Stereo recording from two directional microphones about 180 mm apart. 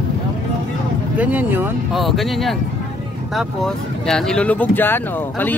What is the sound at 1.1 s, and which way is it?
Speech, 10° right (ahead or behind).